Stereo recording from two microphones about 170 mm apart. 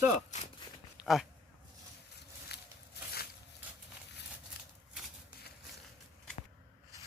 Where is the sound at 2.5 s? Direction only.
75° left (ahead or behind).